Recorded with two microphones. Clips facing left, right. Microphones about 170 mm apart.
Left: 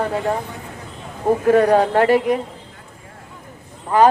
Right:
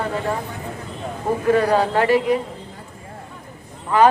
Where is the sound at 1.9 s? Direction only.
55° left (ahead or behind).